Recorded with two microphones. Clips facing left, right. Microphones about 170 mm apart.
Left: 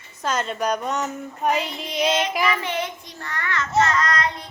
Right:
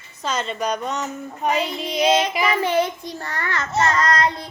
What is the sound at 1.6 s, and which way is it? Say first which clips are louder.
A child's voice: right 3 dB; 40° right (ahead or behind).